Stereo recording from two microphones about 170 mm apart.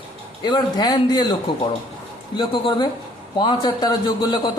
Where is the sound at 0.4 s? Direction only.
25° left (ahead or behind).